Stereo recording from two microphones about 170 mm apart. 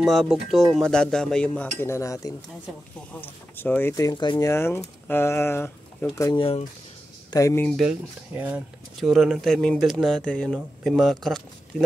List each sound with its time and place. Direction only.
0.0 s speech: centre (ahead or behind); by 6.0 s 15° left (ahead or behind)
6.3 s speech: 30° left (ahead or behind)
7.2 s speech: 20° left (ahead or behind)
7.7 s speech: 5° right (ahead or behind)